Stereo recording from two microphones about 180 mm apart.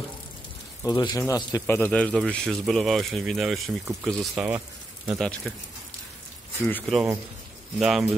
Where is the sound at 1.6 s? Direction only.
10° left (ahead or behind).